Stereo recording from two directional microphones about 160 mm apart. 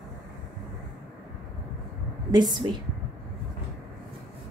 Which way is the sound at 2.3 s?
30° right (ahead or behind).